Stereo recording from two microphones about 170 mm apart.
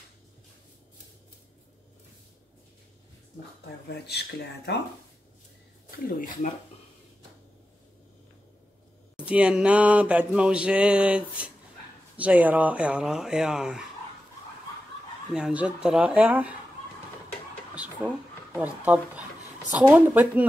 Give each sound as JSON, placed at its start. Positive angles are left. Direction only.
{"t": 3.9, "sound": "speech", "side_deg": 75}
{"t": 6.0, "sound": "speech", "side_deg": 55}
{"t": 9.1, "sound": "mantra", "side_deg": -5}
{"t": 12.2, "sound": "speech", "side_deg": -10}
{"t": 15.3, "sound": "mantra", "side_deg": -5}
{"t": 18.0, "sound": "mantra", "side_deg": -10}